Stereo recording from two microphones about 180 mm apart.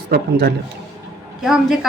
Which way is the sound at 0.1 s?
60° right (ahead or behind).